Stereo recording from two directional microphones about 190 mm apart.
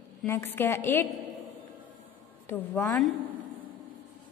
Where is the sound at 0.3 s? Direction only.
10° left (ahead or behind).